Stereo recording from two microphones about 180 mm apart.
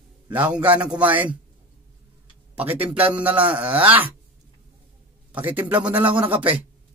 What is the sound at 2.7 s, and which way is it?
Speech, 10° right (ahead or behind).